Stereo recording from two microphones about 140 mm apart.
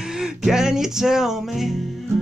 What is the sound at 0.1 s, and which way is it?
Music, 5° right (ahead or behind).